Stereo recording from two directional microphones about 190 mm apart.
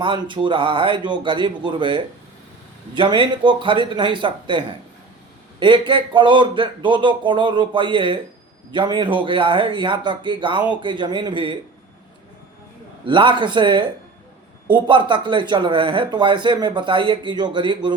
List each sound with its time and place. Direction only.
0.0 s speech: 25° right (ahead or behind)
13.1 s speech: 25° right (ahead or behind)